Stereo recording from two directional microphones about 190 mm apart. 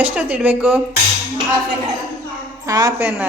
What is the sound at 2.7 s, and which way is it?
Speech, 15° right (ahead or behind).